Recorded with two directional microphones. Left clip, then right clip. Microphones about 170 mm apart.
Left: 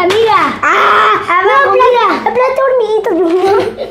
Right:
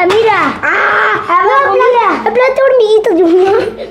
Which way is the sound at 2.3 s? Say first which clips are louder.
Right 2 dB; 25° right (ahead or behind).